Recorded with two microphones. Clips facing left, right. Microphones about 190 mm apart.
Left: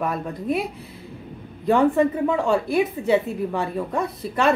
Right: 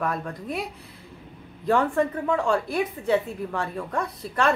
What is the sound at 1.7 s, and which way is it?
Speech, 20° left (ahead or behind).